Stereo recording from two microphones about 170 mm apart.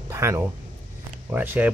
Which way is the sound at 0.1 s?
15° right (ahead or behind).